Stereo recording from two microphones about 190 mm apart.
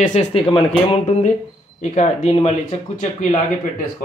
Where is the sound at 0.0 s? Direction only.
35° left (ahead or behind).